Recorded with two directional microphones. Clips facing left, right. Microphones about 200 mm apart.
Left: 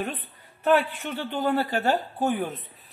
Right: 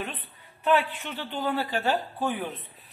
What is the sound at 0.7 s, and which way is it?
Speech, 40° left (ahead or behind).